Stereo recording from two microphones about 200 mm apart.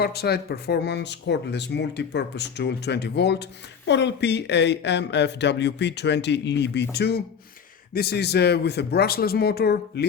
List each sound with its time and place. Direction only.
0.0 s speech: 50° left (ahead or behind)